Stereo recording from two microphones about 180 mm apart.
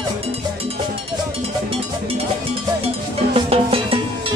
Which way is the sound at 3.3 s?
30° right (ahead or behind).